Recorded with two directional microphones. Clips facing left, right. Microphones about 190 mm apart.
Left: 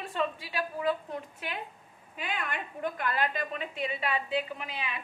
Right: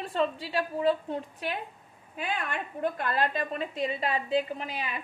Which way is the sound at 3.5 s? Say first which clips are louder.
Right 4 dB; 35° right (ahead or behind).